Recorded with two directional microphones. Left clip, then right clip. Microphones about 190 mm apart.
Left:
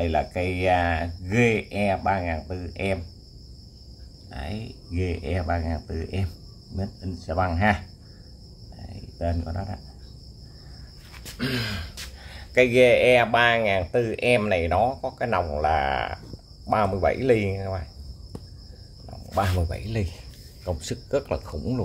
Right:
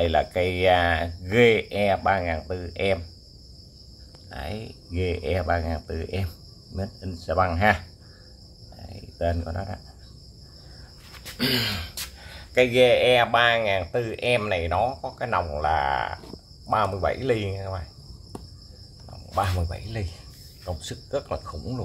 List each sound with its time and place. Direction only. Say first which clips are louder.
0.0 s speech: right 3 dB; 10° right (ahead or behind)
4.3 s speech: right 2 dB; 5° right (ahead or behind)
8.7 s a sound: right 4 dB; 5° right (ahead or behind)
11.3 s a sound: right 4 dB; 25° right (ahead or behind)
12.2 s speech: left 1 dB; 10° left (ahead or behind)
19.3 s speech: left 1 dB; 25° left (ahead or behind)